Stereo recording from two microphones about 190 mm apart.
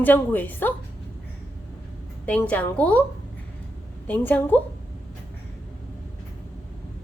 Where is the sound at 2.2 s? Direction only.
5° left (ahead or behind).